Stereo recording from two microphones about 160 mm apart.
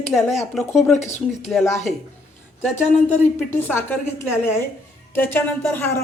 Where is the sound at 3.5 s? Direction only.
10° left (ahead or behind).